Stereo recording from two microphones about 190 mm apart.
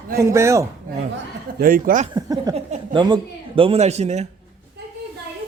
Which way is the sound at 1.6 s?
45° right (ahead or behind).